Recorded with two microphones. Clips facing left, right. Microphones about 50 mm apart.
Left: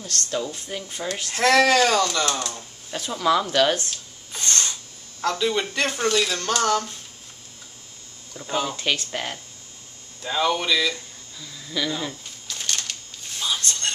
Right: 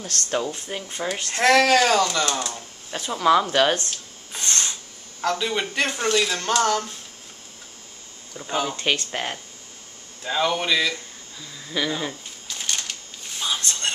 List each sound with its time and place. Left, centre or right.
0.0 s speech: right; by 3.7 s centre
4.3 s a sound: centre
5.2 s speech: centre
8.4 s speech: centre
11.3 s a sound: centre
13.6 s whispering: centre